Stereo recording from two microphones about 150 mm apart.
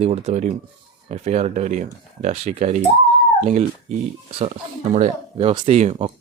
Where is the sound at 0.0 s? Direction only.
45° right (ahead or behind).